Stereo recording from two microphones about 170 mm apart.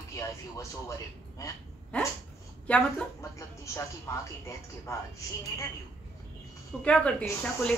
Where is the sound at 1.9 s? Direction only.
5° left (ahead or behind).